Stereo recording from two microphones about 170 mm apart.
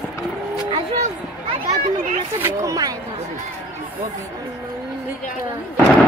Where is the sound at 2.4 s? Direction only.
15° right (ahead or behind).